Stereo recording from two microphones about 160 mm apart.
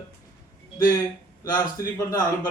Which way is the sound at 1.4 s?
20° left (ahead or behind).